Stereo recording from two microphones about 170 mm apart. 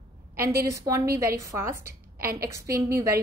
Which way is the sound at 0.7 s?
20° right (ahead or behind).